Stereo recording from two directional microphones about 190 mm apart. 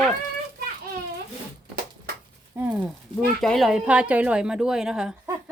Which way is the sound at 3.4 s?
Centre (ahead or behind).